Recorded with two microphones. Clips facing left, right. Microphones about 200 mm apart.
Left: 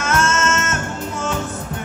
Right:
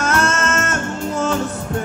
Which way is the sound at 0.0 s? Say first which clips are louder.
Right 1 dB; 35° right (ahead or behind).